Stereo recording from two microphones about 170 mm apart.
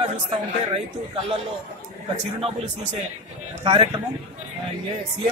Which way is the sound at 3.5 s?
40° right (ahead or behind).